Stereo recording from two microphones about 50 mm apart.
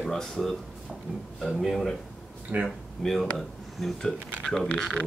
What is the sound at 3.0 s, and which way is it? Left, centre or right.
Speech, centre.